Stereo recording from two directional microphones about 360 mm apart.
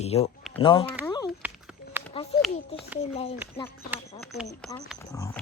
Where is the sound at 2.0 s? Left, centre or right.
Centre.